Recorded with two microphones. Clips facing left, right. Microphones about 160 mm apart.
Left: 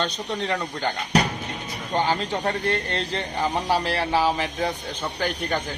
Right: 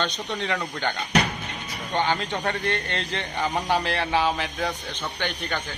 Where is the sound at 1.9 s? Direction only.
30° left (ahead or behind).